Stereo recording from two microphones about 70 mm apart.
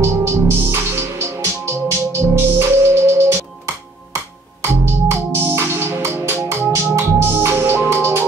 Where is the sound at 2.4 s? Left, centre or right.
Right.